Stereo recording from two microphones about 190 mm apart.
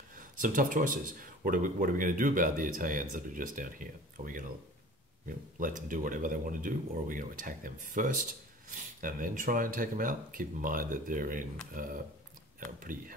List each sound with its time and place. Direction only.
0.1 s speech: 45° right (ahead or behind)